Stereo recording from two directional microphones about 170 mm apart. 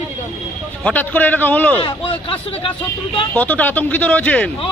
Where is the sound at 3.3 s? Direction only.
10° left (ahead or behind).